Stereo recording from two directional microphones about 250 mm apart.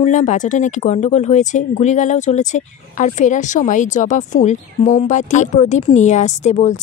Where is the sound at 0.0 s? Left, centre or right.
Left.